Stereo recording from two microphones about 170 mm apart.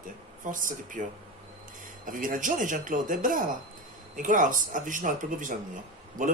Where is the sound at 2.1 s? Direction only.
55° right (ahead or behind).